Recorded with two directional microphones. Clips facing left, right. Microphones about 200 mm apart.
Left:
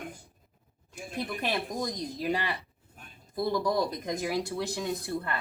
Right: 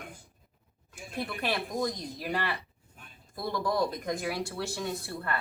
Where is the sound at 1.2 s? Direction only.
20° left (ahead or behind).